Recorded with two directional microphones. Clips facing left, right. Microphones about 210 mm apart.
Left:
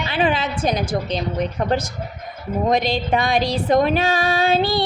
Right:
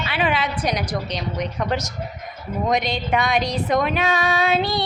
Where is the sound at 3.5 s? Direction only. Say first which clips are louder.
Left 4 dB; 30° left (ahead or behind).